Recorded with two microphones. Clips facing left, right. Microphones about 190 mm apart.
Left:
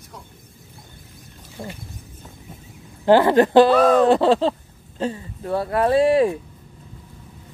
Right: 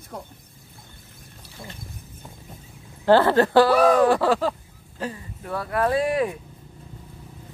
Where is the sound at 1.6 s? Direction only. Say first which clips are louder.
Left 7 dB; 35° left (ahead or behind).